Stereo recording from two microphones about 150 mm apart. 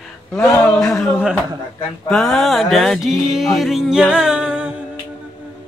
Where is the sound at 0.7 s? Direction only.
5° left (ahead or behind).